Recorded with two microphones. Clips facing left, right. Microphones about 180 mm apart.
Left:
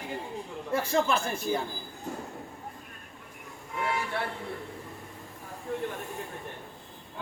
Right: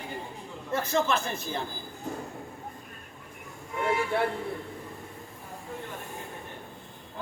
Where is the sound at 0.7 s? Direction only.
10° left (ahead or behind).